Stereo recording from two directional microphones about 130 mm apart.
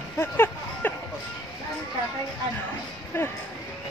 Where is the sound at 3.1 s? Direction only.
15° left (ahead or behind).